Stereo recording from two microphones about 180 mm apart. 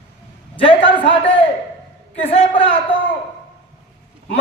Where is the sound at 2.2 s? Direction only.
35° left (ahead or behind).